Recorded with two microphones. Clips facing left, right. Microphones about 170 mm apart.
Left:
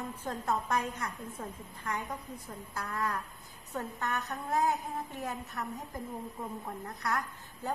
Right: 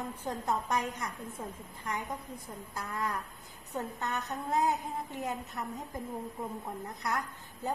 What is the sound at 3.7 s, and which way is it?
A woman's voice, 20° right (ahead or behind).